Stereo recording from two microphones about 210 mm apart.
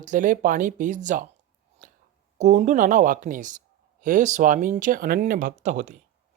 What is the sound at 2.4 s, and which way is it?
Speech, 35° right (ahead or behind).